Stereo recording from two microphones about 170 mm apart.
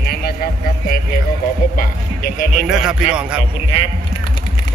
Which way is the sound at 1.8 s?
50° left (ahead or behind).